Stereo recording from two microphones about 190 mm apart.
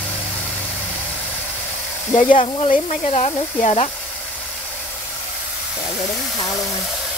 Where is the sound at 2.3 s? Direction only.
35° left (ahead or behind).